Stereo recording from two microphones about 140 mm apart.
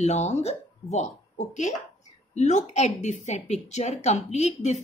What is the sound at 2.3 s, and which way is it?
A woman's voice, 55° left (ahead or behind).